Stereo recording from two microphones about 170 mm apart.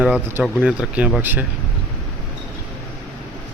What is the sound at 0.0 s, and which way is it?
Speech, 10° right (ahead or behind).